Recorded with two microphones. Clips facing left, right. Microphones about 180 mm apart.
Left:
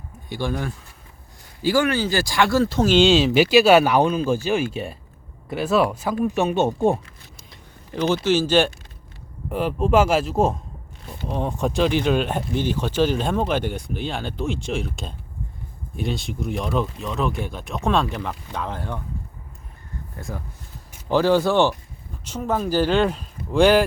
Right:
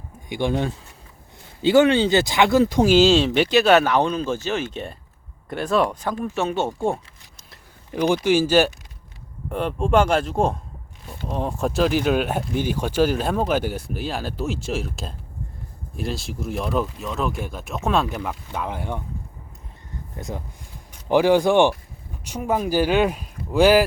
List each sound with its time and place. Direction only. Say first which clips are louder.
0.3 s speech: right 3 dB; 20° right (ahead or behind); by 7.0 s 20° left (ahead or behind)
7.9 s speech: right 1 dB; 15° right (ahead or behind)
9.5 s speech: left 1 dB; 5° left (ahead or behind); by 19.0 s 10° right (ahead or behind)
20.1 s speech: right 2 dB; 20° right (ahead or behind)